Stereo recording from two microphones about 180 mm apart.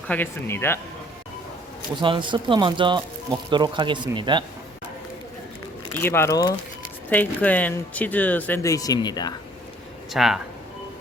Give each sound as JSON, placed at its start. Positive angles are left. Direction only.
{"t": 0.1, "sound": "speech", "side_deg": 10}
{"t": 2.0, "sound": "speech", "side_deg": -25}
{"t": 5.9, "sound": "speech", "side_deg": 10}
{"t": 10.1, "sound": "speech", "side_deg": 0}